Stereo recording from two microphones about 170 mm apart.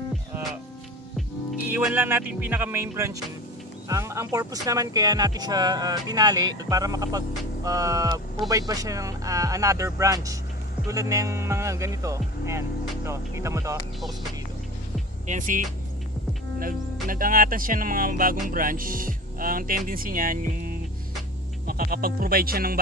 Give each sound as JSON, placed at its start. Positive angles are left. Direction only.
{"t": 1.7, "sound": "speech", "side_deg": -10}
{"t": 15.2, "sound": "speech", "side_deg": -50}